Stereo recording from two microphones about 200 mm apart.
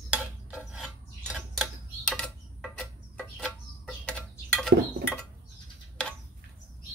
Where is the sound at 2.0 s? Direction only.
5° left (ahead or behind).